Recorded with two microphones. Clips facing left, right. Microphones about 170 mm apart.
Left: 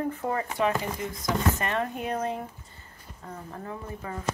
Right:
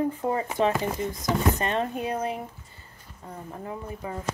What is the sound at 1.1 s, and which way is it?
Female singing, centre (ahead or behind).